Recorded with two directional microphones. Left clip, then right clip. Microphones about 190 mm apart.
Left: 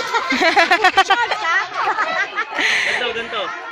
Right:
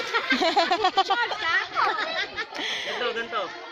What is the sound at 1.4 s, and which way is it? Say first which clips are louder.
Chatter: left 5 dB; 75° right (ahead or behind).